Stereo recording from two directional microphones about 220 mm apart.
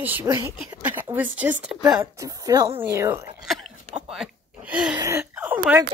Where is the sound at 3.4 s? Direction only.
Centre (ahead or behind).